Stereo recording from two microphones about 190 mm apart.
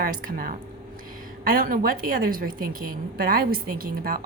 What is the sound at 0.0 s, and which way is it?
A woman's voice, 45° right (ahead or behind).